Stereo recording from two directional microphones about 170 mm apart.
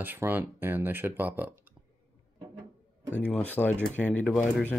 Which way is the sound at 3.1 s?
10° left (ahead or behind).